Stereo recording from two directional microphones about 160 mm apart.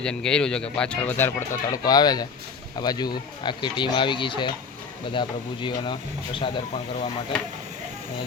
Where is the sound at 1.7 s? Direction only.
25° left (ahead or behind).